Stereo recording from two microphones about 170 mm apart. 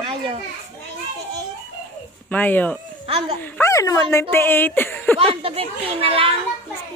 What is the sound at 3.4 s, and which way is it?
Speech, 10° left (ahead or behind).